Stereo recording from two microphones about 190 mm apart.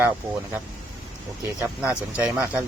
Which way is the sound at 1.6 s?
5° right (ahead or behind).